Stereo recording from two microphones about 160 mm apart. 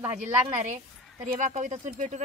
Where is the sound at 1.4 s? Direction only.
50° right (ahead or behind).